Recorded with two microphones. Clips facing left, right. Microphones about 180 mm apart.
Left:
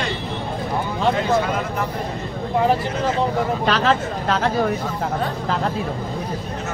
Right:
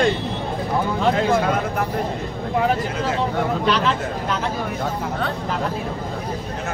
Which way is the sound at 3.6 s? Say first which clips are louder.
Left 1 dB; 90° left.